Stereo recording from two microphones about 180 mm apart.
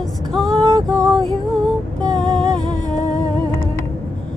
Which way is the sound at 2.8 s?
45° left (ahead or behind).